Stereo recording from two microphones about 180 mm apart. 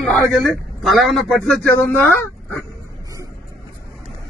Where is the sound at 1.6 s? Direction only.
10° left (ahead or behind).